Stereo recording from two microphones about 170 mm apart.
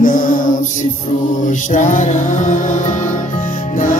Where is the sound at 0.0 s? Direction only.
50° left (ahead or behind).